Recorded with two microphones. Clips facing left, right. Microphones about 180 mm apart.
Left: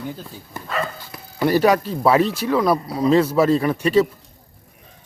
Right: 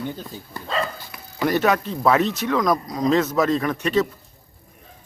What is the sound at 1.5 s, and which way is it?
Speech, 10° left (ahead or behind).